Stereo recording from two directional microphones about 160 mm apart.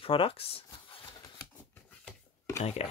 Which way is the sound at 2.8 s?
40° left (ahead or behind).